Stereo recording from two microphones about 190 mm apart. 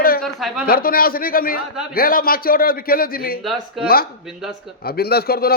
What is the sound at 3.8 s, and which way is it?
A man's voice, 50° left (ahead or behind).